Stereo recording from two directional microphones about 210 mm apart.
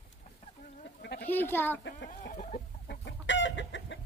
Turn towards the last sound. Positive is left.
turn(degrees=60)  # may be behind; listen again after turning